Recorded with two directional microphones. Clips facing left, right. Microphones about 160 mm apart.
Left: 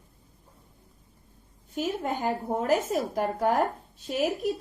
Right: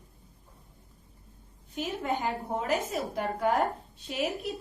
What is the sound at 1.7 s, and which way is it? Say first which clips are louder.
Speech: left 2 dB; 40° left (ahead or behind).